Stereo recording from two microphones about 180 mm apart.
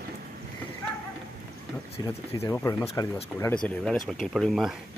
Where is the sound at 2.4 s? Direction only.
15° left (ahead or behind).